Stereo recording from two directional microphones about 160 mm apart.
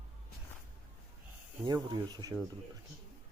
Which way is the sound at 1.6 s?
25° right (ahead or behind).